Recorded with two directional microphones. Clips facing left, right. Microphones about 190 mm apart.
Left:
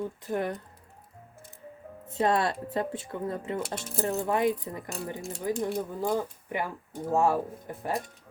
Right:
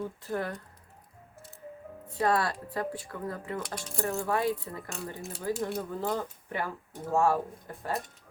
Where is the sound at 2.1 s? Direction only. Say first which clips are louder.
Left 2 dB; 25° left (ahead or behind).